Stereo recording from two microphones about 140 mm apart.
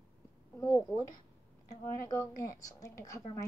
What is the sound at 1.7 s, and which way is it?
A woman's voice, 20° left (ahead or behind).